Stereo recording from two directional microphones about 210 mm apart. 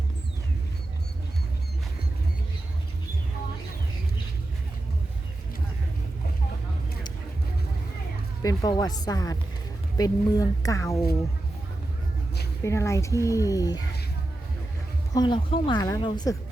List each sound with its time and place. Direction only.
8.4 s speech: 20° left (ahead or behind)
12.6 s speech: 15° left (ahead or behind)
15.1 s speech: 20° left (ahead or behind)